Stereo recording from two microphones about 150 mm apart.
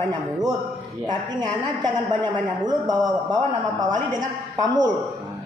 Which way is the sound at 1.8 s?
30° right (ahead or behind).